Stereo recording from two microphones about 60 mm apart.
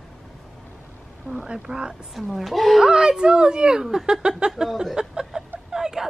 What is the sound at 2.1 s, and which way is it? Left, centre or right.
Speech, centre.